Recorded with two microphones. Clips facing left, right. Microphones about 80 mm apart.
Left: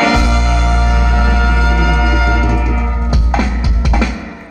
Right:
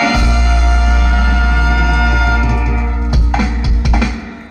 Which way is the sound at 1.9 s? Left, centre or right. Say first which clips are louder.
Even; left.